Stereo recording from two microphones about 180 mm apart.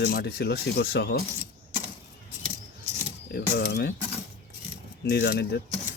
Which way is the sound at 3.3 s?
60° left (ahead or behind).